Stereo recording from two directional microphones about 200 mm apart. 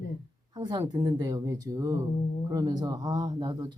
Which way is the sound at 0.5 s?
20° right (ahead or behind).